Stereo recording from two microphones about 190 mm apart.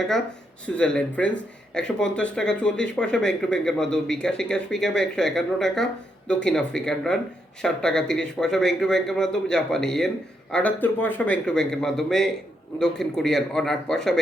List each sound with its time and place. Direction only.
0.8 s speech: 5° left (ahead or behind)